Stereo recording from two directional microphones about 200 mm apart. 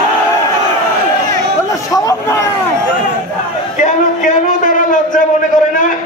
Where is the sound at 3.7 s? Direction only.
40° left (ahead or behind).